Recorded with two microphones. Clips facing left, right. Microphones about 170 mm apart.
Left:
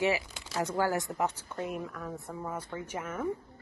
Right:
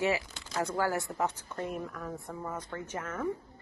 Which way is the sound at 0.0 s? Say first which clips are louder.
Left 1 dB; 15° left (ahead or behind).